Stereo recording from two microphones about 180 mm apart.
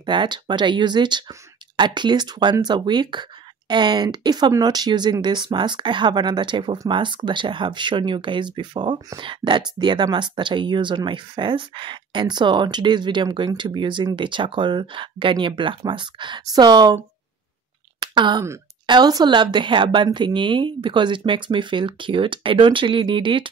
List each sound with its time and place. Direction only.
0.0 s speech: 25° right (ahead or behind)
18.0 s a woman's voice: 25° right (ahead or behind)